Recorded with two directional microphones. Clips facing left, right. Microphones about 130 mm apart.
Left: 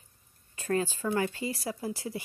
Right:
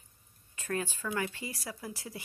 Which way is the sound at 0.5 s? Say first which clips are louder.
Left 6 dB; 30° left (ahead or behind).